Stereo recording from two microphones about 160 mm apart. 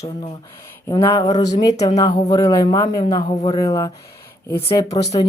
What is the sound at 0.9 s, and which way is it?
Speech, 20° left (ahead or behind).